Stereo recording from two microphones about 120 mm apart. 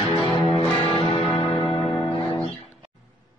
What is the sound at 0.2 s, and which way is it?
Music, 45° left (ahead or behind).